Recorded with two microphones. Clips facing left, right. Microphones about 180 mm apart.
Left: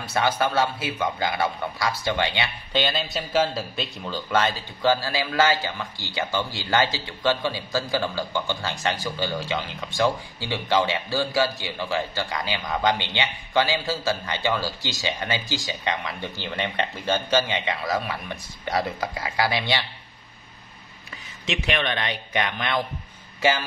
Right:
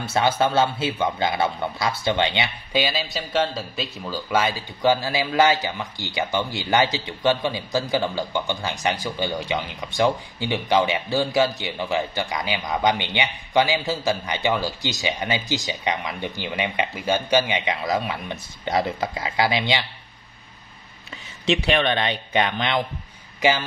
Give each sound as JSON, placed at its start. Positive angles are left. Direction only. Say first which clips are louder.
{"t": 0.0, "sound": "a man's voice", "louder": "right 3 dB", "side_deg": -25}
{"t": 2.7, "sound": "a man's voice", "louder": "right 1 dB", "side_deg": -5}
{"t": 21.5, "sound": "a man's voice", "louder": "right 5 dB", "side_deg": -35}